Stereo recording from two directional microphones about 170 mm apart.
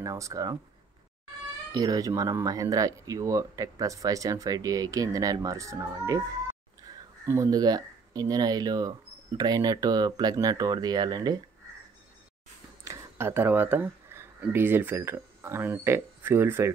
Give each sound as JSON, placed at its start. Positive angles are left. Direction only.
{"t": 0.0, "sound": "speech", "side_deg": -20}
{"t": 1.7, "sound": "speech", "side_deg": -20}
{"t": 12.8, "sound": "speech", "side_deg": -15}